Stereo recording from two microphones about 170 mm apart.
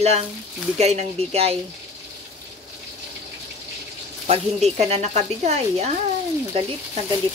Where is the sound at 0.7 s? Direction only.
40° right (ahead or behind).